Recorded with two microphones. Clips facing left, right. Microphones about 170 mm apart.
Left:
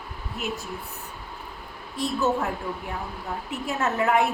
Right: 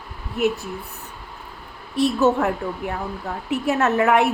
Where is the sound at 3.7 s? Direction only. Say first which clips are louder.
Right 5 dB; 70° right (ahead or behind).